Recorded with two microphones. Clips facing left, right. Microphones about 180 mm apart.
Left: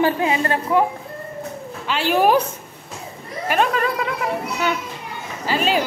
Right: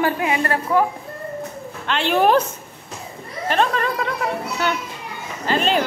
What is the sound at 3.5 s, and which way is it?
Speech, 10° left (ahead or behind).